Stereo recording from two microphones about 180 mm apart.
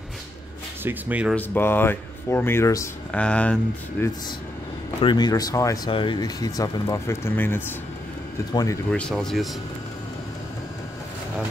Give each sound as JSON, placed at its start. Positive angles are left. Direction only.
{"t": 0.8, "sound": "speech", "side_deg": -10}
{"t": 1.3, "sound": "speech", "side_deg": 10}
{"t": 5.0, "sound": "speech", "side_deg": 25}
{"t": 8.9, "sound": "speech", "side_deg": 5}